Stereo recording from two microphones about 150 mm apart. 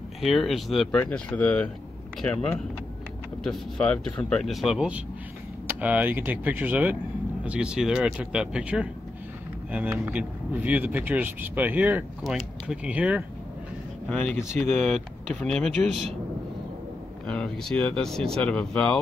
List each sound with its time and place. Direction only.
0.2 s speech: centre (ahead or behind)
3.4 s speech: 5° left (ahead or behind)
14.0 s speech: 5° left (ahead or behind)
17.3 s speech: 5° left (ahead or behind)